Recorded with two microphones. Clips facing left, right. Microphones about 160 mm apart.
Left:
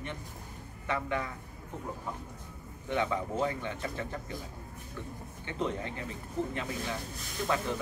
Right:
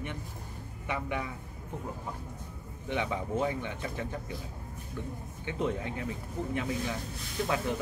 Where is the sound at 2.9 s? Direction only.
15° right (ahead or behind).